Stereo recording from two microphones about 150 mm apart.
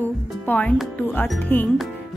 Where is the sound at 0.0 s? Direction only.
10° left (ahead or behind).